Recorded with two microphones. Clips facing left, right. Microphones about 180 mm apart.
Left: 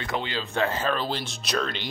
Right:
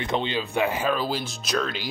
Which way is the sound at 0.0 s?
20° right (ahead or behind).